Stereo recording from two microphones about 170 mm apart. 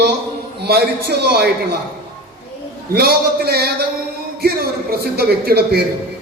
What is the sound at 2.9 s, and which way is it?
A man's voice, 65° right (ahead or behind).